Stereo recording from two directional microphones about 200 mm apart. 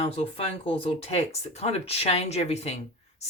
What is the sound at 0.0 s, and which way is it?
Speech, 30° left (ahead or behind).